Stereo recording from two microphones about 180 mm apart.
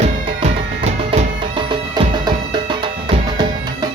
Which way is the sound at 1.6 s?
25° right (ahead or behind).